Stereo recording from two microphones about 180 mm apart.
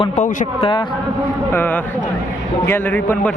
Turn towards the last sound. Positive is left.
turn(degrees=10)  # may be behind; listen again after turning